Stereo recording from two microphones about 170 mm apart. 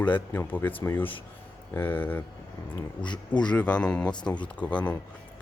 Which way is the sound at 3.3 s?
5° left (ahead or behind).